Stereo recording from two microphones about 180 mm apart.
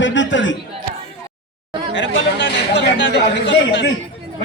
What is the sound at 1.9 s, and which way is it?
A man's voice, 85° left.